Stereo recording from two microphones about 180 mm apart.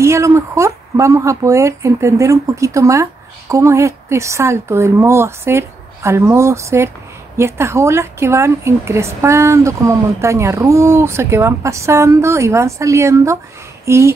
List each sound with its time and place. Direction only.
0.0 s a woman's voice: 15° right (ahead or behind)